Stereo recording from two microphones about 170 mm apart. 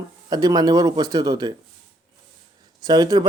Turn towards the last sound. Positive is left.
turn(degrees=-25)  # may be behind; listen again after turning